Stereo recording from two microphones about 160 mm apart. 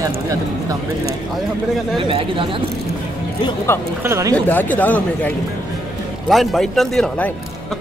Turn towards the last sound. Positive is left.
turn(degrees=0)  # may be behind; listen again after turning